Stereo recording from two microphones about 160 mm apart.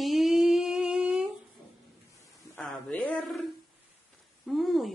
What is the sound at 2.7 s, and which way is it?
Speech, 5° left (ahead or behind).